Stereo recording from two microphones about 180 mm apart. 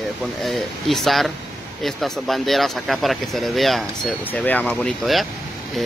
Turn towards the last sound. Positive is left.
turn(degrees=0)  # may be behind; listen again after turning